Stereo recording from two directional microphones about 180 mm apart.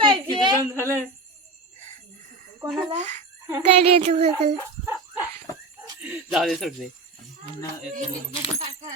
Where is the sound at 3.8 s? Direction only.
35° right (ahead or behind).